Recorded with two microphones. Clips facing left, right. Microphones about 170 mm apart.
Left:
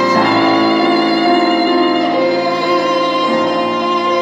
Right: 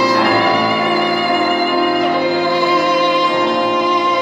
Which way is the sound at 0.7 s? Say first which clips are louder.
Left 4 dB; 35° left (ahead or behind).